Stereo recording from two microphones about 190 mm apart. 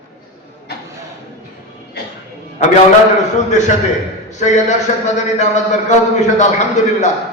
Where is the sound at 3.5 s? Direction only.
40° left (ahead or behind).